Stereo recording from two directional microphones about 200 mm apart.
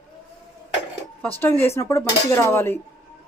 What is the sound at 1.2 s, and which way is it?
Speech, 10° left (ahead or behind).